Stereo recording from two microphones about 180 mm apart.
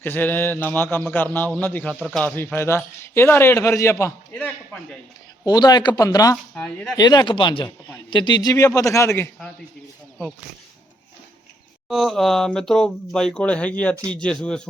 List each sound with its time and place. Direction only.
0.0 s a man's voice: 10° left (ahead or behind)
2.0 s speech: 5° right (ahead or behind)
2.2 s a man's voice: 10° left (ahead or behind)
5.5 s speech: 20° left (ahead or behind)
6.3 s speech: 5° left (ahead or behind)
6.9 s a man's voice: 20° left (ahead or behind)
11.9 s speech: centre (ahead or behind)